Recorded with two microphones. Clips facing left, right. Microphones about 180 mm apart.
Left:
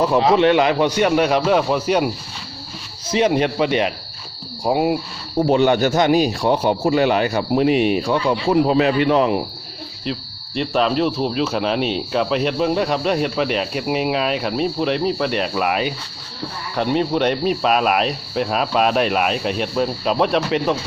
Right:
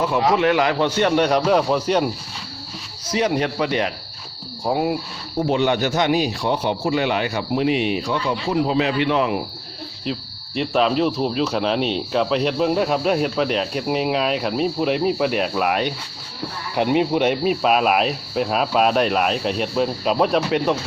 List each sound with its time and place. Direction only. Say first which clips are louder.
0.2 s a man's voice: left 2 dB; 25° left (ahead or behind); by 2.0 s 5° left (ahead or behind)
3.1 s speech: left 3 dB; 20° left (ahead or behind)
5.4 s a man's voice: left 4 dB; 45° left (ahead or behind)
10.1 s speech: left 1 dB; centre (ahead or behind)
16.7 s speech: right 1 dB; 15° right (ahead or behind)